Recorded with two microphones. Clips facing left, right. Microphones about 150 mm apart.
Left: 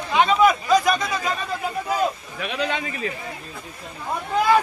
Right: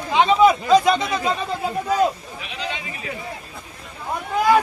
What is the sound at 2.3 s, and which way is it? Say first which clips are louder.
Speech: left 5 dB; 55° left (ahead or behind).